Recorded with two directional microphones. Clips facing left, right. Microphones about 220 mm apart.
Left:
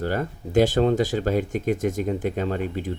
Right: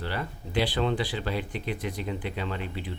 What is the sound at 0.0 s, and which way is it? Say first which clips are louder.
Speech: left 8 dB; 45° left (ahead or behind).